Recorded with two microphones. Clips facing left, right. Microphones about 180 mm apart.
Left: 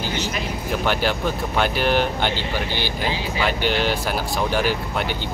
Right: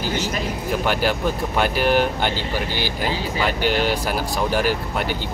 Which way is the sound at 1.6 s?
5° right (ahead or behind).